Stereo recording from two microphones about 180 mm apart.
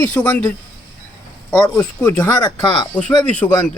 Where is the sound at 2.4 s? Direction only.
25° left (ahead or behind).